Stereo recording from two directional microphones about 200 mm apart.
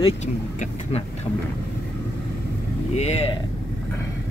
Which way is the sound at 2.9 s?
30° left (ahead or behind).